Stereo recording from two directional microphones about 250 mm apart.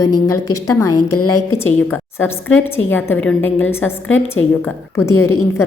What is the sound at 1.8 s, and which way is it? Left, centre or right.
A woman's voice, centre.